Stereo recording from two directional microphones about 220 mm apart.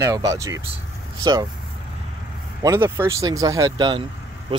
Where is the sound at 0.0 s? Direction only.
15° right (ahead or behind).